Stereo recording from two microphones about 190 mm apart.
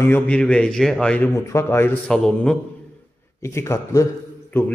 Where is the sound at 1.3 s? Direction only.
15° left (ahead or behind).